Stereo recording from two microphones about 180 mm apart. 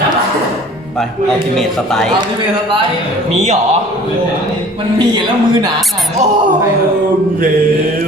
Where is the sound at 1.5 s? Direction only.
Centre (ahead or behind).